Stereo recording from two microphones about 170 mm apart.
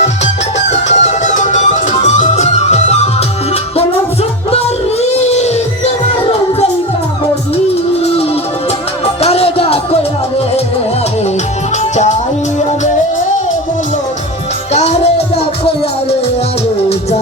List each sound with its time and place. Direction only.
0.7 s music: 40° left (ahead or behind)
9.2 s music: 35° left (ahead or behind)
11.8 s music: 40° left (ahead or behind)
14.7 s music: 40° left (ahead or behind)